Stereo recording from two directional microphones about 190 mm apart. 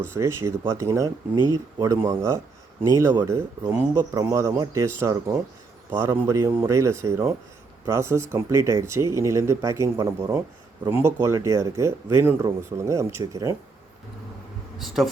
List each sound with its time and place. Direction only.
0.1 s speech: 15° right (ahead or behind)
14.8 s speech: centre (ahead or behind)